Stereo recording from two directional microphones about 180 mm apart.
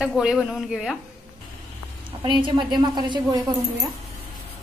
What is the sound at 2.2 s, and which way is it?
A woman's voice, 25° right (ahead or behind).